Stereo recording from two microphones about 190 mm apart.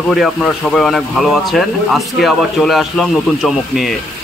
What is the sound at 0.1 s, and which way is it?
Speech, centre (ahead or behind).